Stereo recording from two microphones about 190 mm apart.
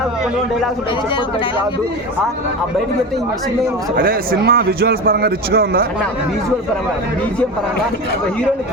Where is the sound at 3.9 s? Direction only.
50° right (ahead or behind).